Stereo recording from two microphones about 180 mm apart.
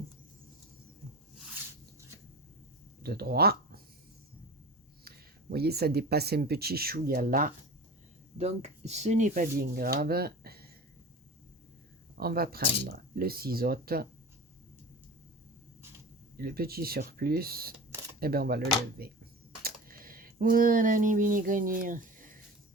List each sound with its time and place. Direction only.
3.0 s speech: 60° right (ahead or behind)
5.0 s speech: 60° right (ahead or behind)
8.4 s speech: 40° right (ahead or behind); by 10.7 s 60° right (ahead or behind)
12.1 s speech: 60° right (ahead or behind)
16.4 s speech: 55° right (ahead or behind)